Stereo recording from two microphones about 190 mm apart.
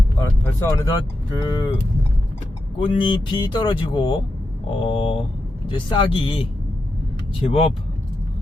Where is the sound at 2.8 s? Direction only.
25° left (ahead or behind).